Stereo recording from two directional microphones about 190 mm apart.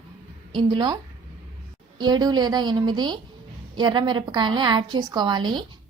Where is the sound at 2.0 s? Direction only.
20° right (ahead or behind).